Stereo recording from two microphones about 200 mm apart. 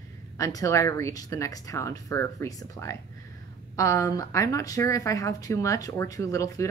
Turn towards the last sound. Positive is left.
turn(degrees=15)  # may be behind; listen again after turning